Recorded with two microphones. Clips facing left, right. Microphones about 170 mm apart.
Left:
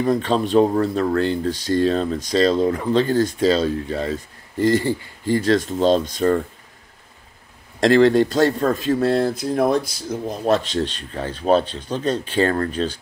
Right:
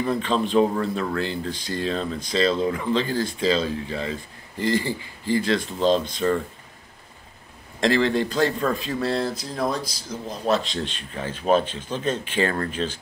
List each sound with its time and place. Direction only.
0.0 s speech: 40° left (ahead or behind)
7.8 s speech: 45° left (ahead or behind)